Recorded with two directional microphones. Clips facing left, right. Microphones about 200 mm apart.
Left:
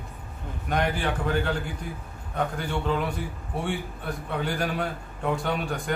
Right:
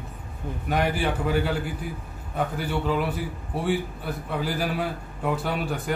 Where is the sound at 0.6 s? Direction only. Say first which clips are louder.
Right 2 dB; 5° right (ahead or behind).